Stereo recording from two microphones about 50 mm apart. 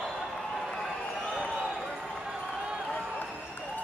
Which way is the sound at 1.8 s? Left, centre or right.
Centre.